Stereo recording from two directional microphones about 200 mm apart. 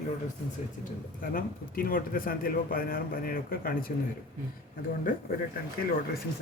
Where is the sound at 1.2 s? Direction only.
45° left (ahead or behind).